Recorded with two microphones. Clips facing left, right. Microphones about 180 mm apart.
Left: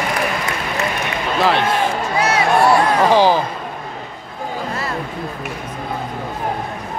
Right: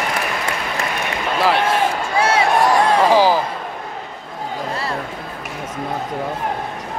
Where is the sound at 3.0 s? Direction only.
5° right (ahead or behind).